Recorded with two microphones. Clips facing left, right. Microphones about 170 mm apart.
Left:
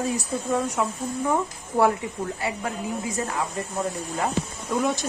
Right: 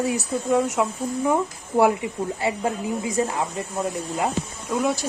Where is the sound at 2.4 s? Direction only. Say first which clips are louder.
Right 4 dB; 25° right (ahead or behind).